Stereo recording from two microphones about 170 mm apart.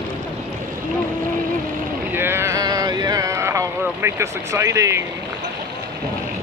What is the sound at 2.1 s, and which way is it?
Boat, 15° right (ahead or behind).